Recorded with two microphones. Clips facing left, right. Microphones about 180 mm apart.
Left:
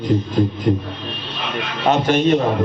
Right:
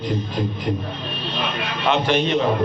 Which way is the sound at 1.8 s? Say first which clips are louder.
Left 4 dB; 45° left (ahead or behind).